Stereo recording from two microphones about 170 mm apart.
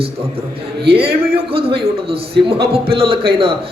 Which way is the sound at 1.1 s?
65° right (ahead or behind).